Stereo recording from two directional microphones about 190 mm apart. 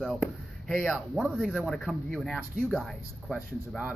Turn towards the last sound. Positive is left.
turn(degrees=0)  # may be behind; listen again after turning